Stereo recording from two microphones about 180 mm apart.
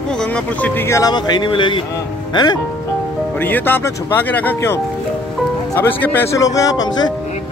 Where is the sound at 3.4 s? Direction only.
10° left (ahead or behind).